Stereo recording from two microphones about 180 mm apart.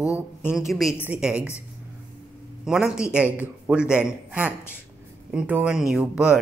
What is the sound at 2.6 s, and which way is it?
Speech, 5° right (ahead or behind).